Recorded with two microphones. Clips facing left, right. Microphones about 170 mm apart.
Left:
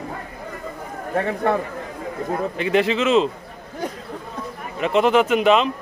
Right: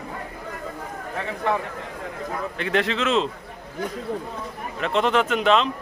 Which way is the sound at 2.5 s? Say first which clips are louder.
Left 4 dB; 5° left (ahead or behind).